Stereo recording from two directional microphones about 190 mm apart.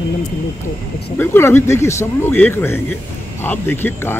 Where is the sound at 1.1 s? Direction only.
10° left (ahead or behind).